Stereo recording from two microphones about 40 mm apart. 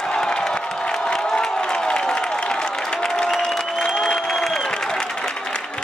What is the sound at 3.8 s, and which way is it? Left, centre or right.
Applause, centre.